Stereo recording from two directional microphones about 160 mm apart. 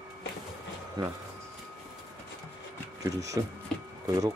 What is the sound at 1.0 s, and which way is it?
Speech, 25° right (ahead or behind).